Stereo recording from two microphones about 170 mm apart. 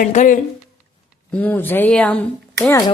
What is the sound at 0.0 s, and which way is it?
Speech, 50° left (ahead or behind).